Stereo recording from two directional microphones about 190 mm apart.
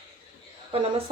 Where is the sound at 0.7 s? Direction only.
30° right (ahead or behind).